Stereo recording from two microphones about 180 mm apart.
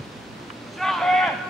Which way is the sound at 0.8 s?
Centre (ahead or behind).